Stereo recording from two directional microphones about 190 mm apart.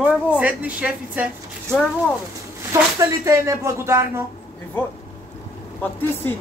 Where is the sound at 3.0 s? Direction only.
15° right (ahead or behind).